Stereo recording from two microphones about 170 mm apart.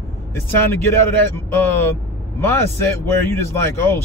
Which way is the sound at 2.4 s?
15° left (ahead or behind).